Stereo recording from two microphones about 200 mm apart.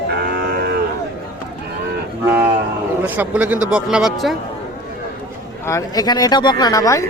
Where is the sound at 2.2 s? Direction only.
10° right (ahead or behind).